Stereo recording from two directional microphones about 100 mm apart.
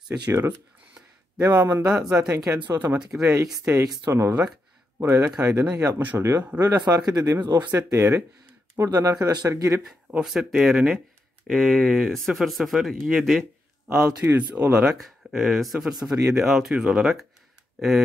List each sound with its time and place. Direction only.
0.3 s speech: 25° right (ahead or behind)
7.7 s speech: 25° right (ahead or behind)
9.8 s speech: 5° right (ahead or behind)
14.0 s speech: 15° right (ahead or behind)
15.0 s speech: centre (ahead or behind)